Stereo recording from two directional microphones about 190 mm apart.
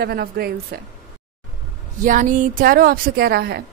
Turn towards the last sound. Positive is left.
turn(degrees=-55)  # may be behind; listen again after turning